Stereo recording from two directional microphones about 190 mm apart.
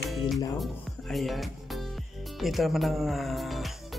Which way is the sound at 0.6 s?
Centre (ahead or behind).